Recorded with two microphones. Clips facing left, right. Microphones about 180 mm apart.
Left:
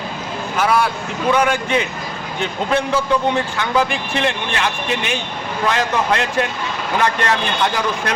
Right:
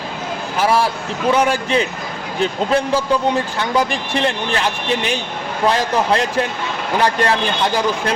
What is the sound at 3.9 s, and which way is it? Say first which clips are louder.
Speech: right 1 dB; 35° right (ahead or behind).